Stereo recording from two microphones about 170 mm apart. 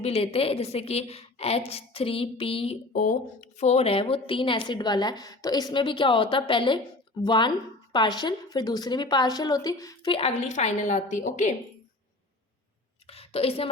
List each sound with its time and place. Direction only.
0.0 s a woman's voice: 35° left (ahead or behind)
2.9 s a woman's voice: 50° left (ahead or behind); by 10.1 s 20° left (ahead or behind)
10.1 s a woman's voice: 35° left (ahead or behind)
13.1 s a woman's voice: 35° left (ahead or behind)